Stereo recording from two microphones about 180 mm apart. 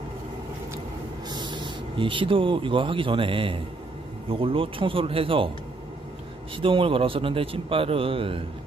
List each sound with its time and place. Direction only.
1.3 s a man's voice: 25° right (ahead or behind)
6.5 s a man's voice: 30° right (ahead or behind)